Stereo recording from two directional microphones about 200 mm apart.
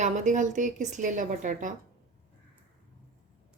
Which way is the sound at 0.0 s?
40° right (ahead or behind).